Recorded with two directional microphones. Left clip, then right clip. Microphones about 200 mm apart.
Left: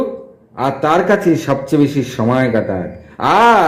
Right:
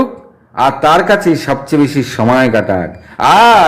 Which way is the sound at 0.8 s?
15° right (ahead or behind).